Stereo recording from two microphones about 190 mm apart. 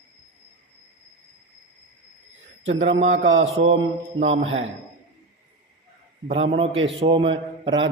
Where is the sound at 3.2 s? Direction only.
85° right.